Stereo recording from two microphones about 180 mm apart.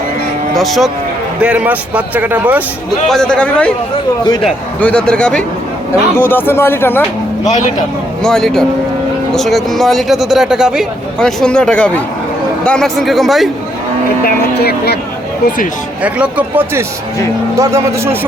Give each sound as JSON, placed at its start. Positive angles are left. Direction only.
{"t": 0.5, "sound": "speech", "side_deg": 0}
{"t": 3.1, "sound": "speech", "side_deg": 5}
{"t": 4.2, "sound": "a man's voice", "side_deg": 25}
{"t": 4.4, "sound": "speech", "side_deg": 5}
{"t": 8.2, "sound": "speech", "side_deg": 5}
{"t": 14.3, "sound": "speech", "side_deg": 60}
{"t": 16.0, "sound": "speech", "side_deg": -5}